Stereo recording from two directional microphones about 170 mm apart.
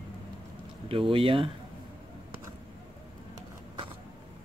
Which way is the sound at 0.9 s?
30° right (ahead or behind).